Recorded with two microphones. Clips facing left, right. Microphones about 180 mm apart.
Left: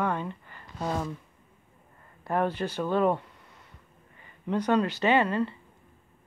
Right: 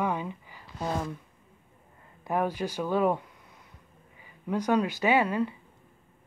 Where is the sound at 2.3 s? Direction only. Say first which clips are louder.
Left 1 dB; 10° right (ahead or behind).